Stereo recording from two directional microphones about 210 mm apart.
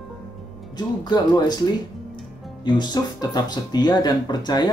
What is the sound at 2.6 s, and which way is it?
Speech, 20° left (ahead or behind).